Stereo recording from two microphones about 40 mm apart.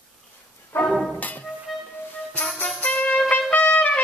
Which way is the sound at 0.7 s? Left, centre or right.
Left.